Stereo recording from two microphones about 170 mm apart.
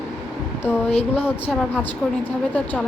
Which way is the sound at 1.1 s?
5° right (ahead or behind).